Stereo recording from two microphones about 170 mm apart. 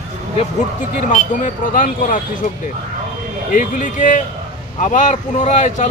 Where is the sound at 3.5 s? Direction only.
50° left (ahead or behind).